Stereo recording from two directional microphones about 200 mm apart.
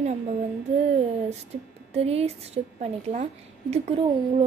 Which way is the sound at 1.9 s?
30° right (ahead or behind).